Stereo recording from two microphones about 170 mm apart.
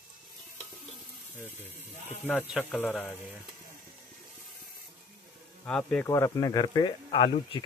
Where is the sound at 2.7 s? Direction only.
10° left (ahead or behind).